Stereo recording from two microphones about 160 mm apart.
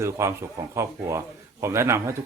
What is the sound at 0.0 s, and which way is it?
A man's voice, 15° right (ahead or behind).